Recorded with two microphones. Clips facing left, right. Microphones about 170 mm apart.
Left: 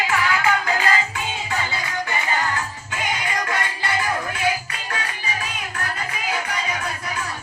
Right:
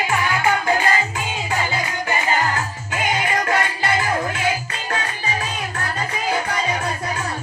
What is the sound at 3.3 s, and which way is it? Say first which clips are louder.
Music: right 5 dB; 20° right (ahead or behind).